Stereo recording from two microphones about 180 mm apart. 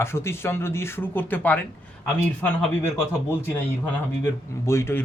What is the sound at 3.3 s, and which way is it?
Speech, 10° left (ahead or behind).